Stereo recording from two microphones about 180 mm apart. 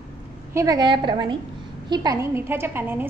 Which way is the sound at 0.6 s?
20° right (ahead or behind).